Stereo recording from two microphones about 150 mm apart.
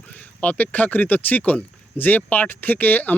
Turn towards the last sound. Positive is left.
turn(degrees=10)  # may be behind; listen again after turning